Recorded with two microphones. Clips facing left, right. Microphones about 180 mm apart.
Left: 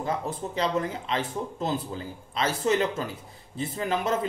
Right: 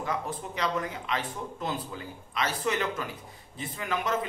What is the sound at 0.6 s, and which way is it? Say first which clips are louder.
A man's voice: left 4 dB; 30° left (ahead or behind).